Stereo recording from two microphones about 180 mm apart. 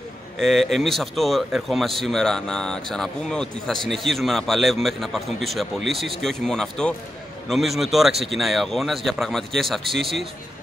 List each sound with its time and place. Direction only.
0.4 s speech: centre (ahead or behind)